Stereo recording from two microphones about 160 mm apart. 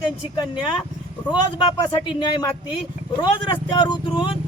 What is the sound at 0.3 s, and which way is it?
Speech, 30° left (ahead or behind).